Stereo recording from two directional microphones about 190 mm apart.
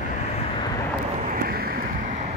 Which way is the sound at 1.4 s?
50° right (ahead or behind).